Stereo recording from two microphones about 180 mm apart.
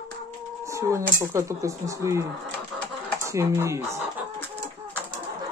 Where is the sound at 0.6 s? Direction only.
15° right (ahead or behind).